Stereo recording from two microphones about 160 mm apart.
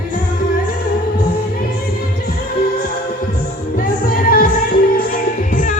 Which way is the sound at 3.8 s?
60° left (ahead or behind).